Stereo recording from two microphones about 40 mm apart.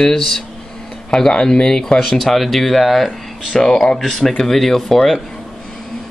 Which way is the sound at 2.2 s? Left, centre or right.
Centre.